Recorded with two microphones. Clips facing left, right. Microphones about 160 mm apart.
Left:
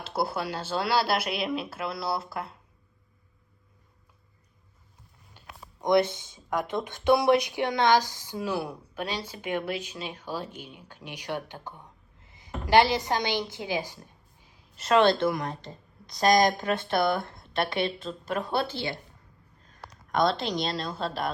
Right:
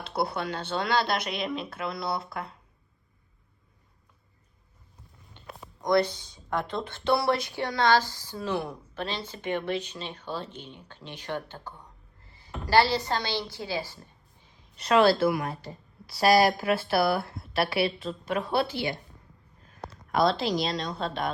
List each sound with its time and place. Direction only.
0.0 s speech: centre (ahead or behind)
5.3 s a sound: 5° left (ahead or behind)
5.8 s a woman's voice: 20° left (ahead or behind); by 21.2 s centre (ahead or behind)